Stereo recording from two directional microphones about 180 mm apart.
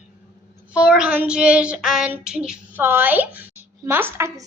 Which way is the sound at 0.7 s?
5° right (ahead or behind).